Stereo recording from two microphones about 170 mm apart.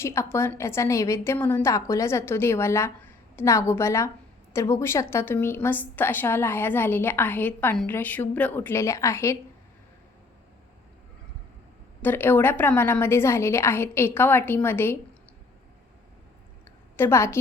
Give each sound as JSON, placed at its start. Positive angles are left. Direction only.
{"t": 0.0, "sound": "a woman's voice", "side_deg": 15}
{"t": 12.0, "sound": "a woman's voice", "side_deg": 10}
{"t": 17.0, "sound": "a woman's voice", "side_deg": 15}